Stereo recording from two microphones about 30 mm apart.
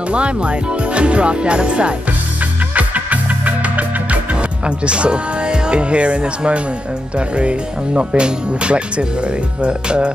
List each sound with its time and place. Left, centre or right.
0.1 s speech: right
2.7 s music: right
7.2 s speech: right